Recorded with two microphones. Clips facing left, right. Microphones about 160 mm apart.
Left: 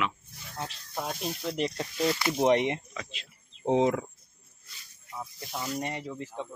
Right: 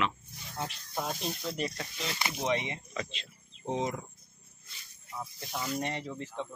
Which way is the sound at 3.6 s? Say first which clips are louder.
Left 8 dB; 75° left (ahead or behind).